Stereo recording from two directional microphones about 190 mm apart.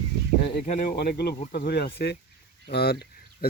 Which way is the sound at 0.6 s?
40° left (ahead or behind).